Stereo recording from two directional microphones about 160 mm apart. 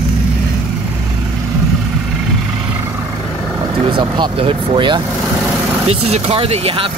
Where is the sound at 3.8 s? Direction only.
30° right (ahead or behind).